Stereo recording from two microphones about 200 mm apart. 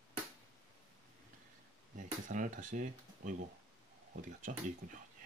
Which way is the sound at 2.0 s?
40° right (ahead or behind).